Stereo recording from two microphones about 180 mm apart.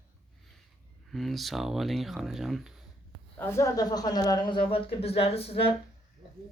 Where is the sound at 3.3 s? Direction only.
15° left (ahead or behind); by 5.5 s 35° left (ahead or behind).